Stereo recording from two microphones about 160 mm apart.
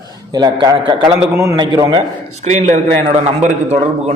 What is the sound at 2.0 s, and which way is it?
Speech, 45° right (ahead or behind).